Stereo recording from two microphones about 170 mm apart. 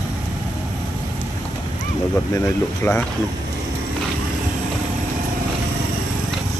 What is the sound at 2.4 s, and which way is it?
Speech, 15° left (ahead or behind).